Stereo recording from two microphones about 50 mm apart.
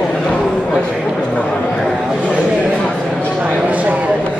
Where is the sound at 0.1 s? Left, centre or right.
Centre.